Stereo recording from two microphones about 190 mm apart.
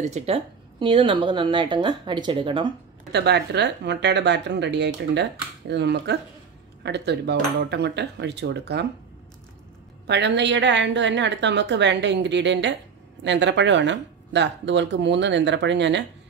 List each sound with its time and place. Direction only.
0.0 s a woman's voice: 35° right (ahead or behind)
0.7 s speech: 25° right (ahead or behind)
3.1 s speech: 60° right (ahead or behind)
10.0 s speech: 65° right (ahead or behind)